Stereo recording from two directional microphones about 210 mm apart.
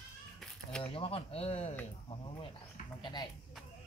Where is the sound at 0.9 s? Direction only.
25° left (ahead or behind).